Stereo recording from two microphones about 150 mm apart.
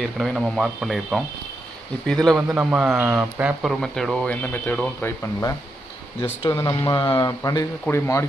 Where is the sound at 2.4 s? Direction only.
15° right (ahead or behind).